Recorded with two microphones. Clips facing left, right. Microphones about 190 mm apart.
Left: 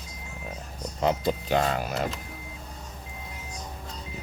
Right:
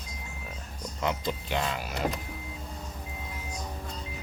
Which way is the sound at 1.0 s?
40° left (ahead or behind).